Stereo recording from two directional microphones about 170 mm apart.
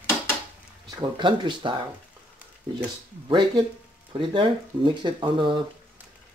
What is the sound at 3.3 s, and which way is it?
Speech, 30° right (ahead or behind).